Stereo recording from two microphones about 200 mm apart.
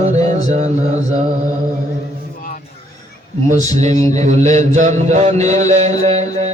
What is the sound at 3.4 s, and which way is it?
Music, 35° right (ahead or behind).